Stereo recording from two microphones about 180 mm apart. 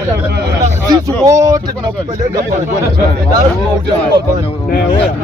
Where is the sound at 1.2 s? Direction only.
20° right (ahead or behind).